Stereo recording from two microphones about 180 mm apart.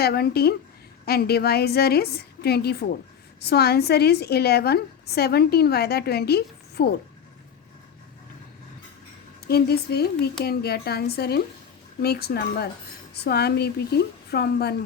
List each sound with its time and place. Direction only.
0.0 s a woman's voice: 60° left (ahead or behind)
9.5 s a woman's voice: 60° left (ahead or behind)